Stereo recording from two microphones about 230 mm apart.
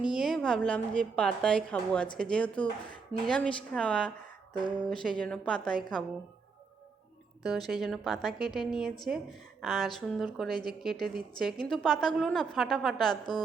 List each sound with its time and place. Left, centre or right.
0.0 s a woman's voice: centre
4.5 s a sound: centre
4.9 s a woman's voice: centre
7.4 s a woman's voice: centre